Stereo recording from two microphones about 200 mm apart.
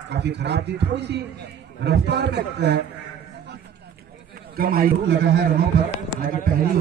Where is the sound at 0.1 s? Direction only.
60° right (ahead or behind).